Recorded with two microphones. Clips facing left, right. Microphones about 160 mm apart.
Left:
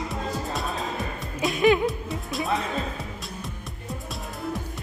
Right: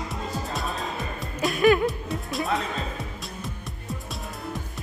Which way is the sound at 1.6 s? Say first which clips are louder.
Right 1 dB; 20° left (ahead or behind).